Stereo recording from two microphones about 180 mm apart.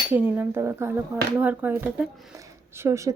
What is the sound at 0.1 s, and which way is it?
A woman's voice, 10° right (ahead or behind).